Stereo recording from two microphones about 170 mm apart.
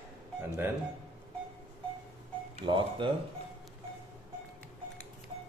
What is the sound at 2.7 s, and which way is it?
Speech, 30° right (ahead or behind).